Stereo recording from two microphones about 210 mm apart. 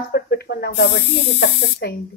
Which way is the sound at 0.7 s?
70° left (ahead or behind).